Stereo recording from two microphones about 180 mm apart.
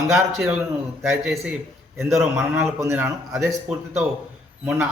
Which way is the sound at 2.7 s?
15° right (ahead or behind).